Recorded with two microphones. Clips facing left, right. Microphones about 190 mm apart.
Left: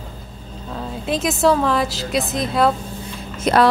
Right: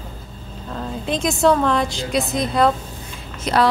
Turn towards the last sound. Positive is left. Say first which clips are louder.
# left 3 dB
turn(degrees=55)  # may be behind; listen again after turning